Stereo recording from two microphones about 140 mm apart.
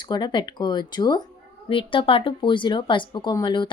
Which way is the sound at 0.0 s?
35° left (ahead or behind).